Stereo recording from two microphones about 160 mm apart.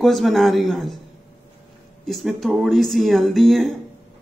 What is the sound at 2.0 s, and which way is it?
Speech, centre (ahead or behind).